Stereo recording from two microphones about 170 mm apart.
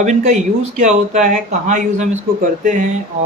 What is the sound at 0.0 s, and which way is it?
Speech, 45° right (ahead or behind).